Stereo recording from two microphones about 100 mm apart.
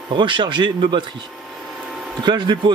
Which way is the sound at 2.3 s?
50° right (ahead or behind).